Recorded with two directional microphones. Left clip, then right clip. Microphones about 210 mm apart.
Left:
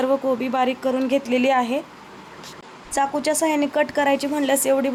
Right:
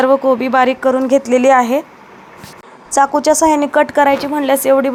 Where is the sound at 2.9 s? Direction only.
20° right (ahead or behind).